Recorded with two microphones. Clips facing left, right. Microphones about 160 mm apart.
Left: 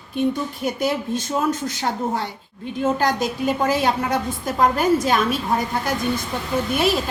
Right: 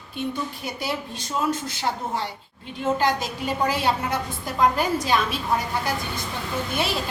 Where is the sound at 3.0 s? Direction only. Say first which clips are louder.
Left 3 dB; 45° left (ahead or behind).